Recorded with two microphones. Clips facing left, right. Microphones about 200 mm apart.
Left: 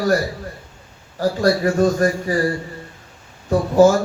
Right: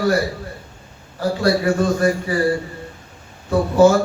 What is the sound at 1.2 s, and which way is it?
Speech, 40° left (ahead or behind).